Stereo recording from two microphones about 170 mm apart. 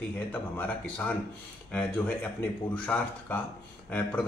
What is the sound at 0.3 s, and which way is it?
A man's voice, 10° left (ahead or behind).